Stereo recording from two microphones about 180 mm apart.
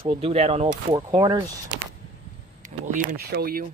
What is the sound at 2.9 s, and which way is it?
Speech, 60° right (ahead or behind).